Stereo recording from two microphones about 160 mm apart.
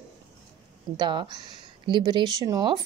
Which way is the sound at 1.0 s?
30° right (ahead or behind).